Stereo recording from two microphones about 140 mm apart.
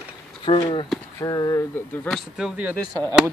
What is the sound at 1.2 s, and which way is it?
Speech, 25° left (ahead or behind).